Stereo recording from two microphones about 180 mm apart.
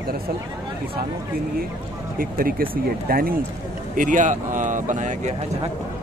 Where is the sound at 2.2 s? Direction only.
55° right (ahead or behind).